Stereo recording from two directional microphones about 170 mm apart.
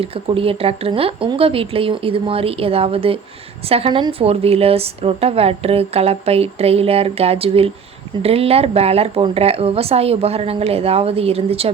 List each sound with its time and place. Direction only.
0.0 s a woman's voice: 35° right (ahead or behind)